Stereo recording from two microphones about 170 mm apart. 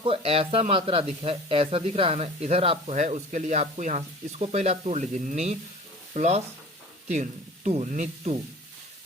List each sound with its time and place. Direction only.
0.0 s speech: 35° right (ahead or behind)